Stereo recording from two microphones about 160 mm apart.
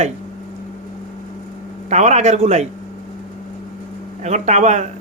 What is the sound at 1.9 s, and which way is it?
Speech, 45° right (ahead or behind).